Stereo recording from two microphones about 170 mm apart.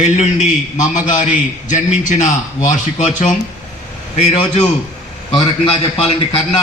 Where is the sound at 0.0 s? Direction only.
45° left (ahead or behind).